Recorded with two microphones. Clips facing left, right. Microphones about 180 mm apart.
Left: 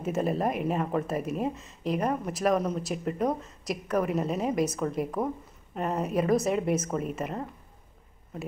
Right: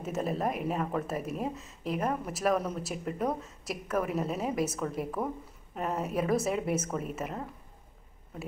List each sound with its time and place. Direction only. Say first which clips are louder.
0.0 s speech: left 4 dB; centre (ahead or behind)